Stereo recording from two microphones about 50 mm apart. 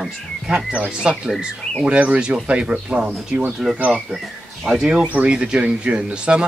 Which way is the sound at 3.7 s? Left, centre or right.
Right.